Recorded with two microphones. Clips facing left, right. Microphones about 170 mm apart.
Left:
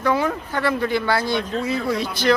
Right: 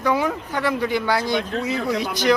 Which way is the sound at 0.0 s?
15° right (ahead or behind).